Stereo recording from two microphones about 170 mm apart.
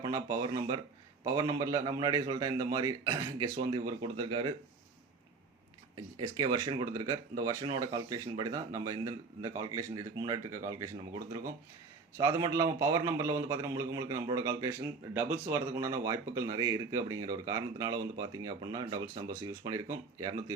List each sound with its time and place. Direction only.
0.0 s speech: 20° right (ahead or behind)
6.1 s a man's voice: 25° right (ahead or behind)